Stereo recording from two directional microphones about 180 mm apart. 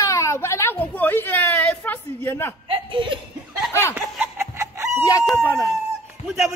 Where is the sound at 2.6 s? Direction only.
30° right (ahead or behind).